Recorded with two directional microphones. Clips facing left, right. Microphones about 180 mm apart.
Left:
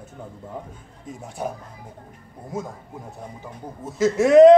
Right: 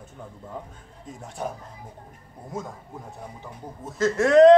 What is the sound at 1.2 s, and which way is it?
Speech, 5° left (ahead or behind).